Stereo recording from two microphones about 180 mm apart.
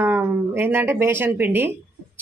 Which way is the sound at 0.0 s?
10° right (ahead or behind).